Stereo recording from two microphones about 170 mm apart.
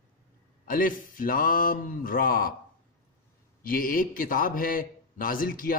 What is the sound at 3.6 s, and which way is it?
A man's voice, 55° left (ahead or behind).